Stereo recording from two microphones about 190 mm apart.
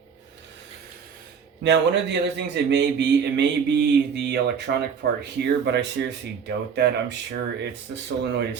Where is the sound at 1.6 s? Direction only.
65° right (ahead or behind).